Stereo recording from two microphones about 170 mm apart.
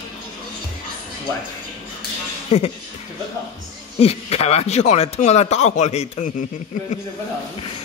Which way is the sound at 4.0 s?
35° left (ahead or behind).